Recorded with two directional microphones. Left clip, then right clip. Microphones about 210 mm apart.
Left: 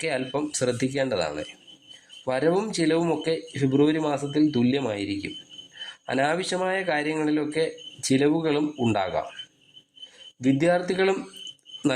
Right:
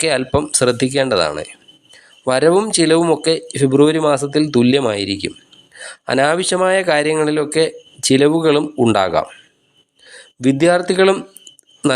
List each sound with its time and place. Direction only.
0.0 s speech: 25° right (ahead or behind)